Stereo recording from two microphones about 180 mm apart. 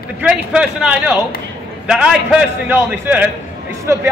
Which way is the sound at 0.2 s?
5° right (ahead or behind).